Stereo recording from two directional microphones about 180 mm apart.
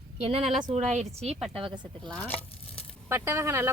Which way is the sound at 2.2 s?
10° left (ahead or behind).